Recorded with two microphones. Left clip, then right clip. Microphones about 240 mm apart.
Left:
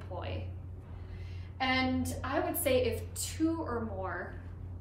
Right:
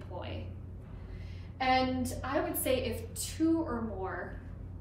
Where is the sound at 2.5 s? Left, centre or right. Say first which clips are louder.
Left 3 dB; centre.